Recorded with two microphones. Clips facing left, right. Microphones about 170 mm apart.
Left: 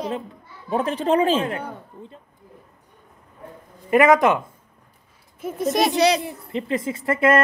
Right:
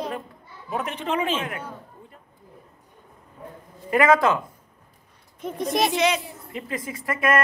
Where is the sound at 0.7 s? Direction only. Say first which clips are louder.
Left 7 dB; 35° left (ahead or behind).